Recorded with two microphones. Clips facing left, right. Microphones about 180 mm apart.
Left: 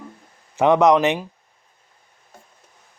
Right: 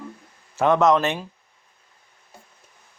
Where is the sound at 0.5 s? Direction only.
15° left (ahead or behind).